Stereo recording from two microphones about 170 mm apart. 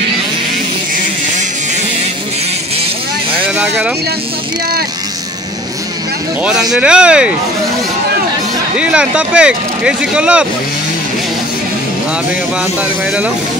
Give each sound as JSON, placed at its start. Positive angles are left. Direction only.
{"t": 3.4, "sound": "a sound", "side_deg": -5}
{"t": 6.7, "sound": "speech", "side_deg": -5}
{"t": 8.7, "sound": "speech", "side_deg": -5}